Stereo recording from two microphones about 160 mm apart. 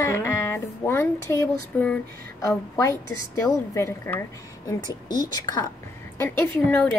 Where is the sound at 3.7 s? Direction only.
15° left (ahead or behind).